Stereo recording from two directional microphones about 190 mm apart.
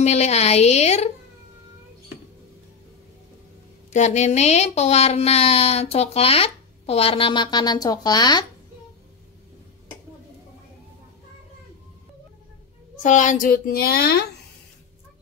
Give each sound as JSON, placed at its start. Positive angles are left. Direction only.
{"t": 0.0, "sound": "speech", "side_deg": 35}
{"t": 3.9, "sound": "speech", "side_deg": 40}
{"t": 13.0, "sound": "a woman's voice", "side_deg": 40}